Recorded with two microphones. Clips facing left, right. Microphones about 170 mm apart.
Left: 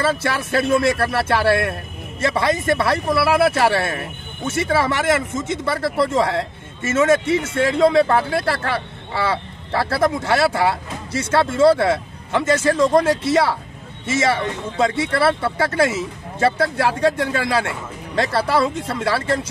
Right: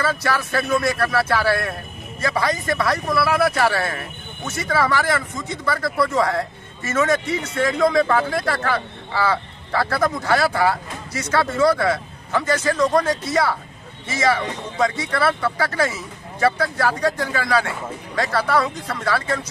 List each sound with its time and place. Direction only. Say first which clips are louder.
0.0 s speech: left 2 dB; 25° left (ahead or behind)